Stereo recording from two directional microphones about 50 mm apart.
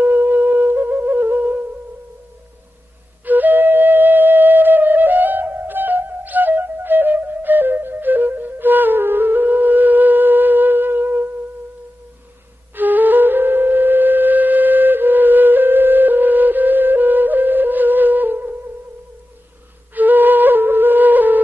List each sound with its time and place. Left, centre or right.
0.0 s music: right
3.3 s flute: right
12.7 s flute: right
19.9 s flute: right